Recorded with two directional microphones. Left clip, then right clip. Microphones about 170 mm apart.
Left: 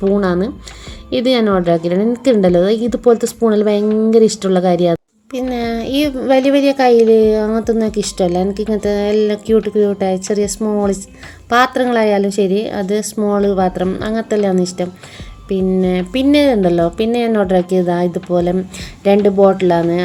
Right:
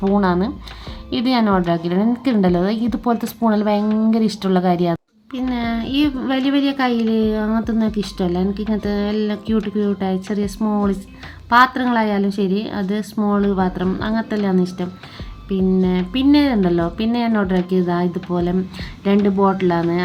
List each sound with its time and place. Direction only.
0.2 s speech: 15° left (ahead or behind)